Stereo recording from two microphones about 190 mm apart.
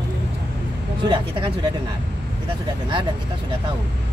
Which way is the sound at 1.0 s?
25° right (ahead or behind).